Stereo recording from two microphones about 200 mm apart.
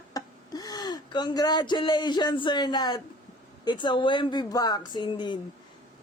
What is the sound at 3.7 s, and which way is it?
Speech, 20° left (ahead or behind).